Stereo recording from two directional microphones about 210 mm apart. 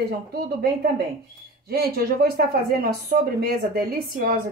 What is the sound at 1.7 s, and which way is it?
Speech, 45° right (ahead or behind).